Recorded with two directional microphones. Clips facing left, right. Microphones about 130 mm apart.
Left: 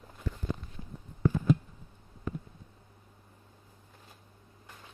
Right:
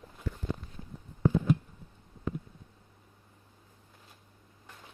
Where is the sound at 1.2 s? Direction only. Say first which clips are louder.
Right 2 dB; 15° right (ahead or behind).